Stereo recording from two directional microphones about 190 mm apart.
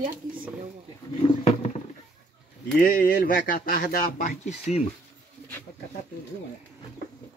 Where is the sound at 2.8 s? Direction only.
45° left (ahead or behind).